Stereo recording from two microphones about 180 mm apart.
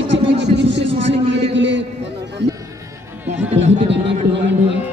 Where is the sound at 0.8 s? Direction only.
35° right (ahead or behind).